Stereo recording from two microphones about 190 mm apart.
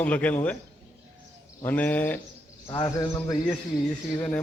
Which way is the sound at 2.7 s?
20° left (ahead or behind).